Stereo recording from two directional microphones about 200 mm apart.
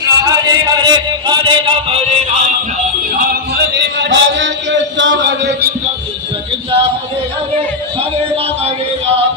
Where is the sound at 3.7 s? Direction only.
60° right (ahead or behind).